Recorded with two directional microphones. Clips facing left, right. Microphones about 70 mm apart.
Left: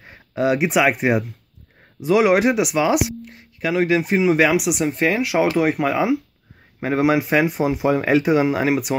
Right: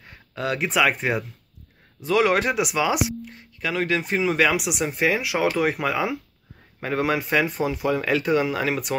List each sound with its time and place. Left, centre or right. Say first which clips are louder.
0.0 s speech: left 8 dB; centre
6.8 s speech: left 6 dB; centre